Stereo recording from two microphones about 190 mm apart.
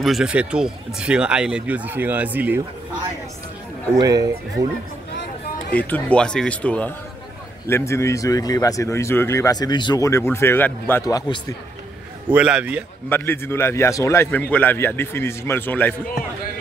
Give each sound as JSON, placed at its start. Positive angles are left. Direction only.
{"t": 0.0, "sound": "speech", "side_deg": 0}
{"t": 4.0, "sound": "speech", "side_deg": -20}
{"t": 5.7, "sound": "speech", "side_deg": 10}
{"t": 12.3, "sound": "a man's voice", "side_deg": -5}
{"t": 13.1, "sound": "speech", "side_deg": 10}